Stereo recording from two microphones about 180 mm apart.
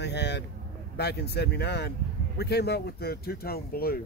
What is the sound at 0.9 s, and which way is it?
Speech, 65° left (ahead or behind).